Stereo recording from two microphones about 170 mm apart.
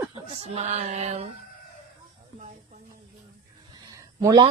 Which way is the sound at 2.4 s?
50° right (ahead or behind).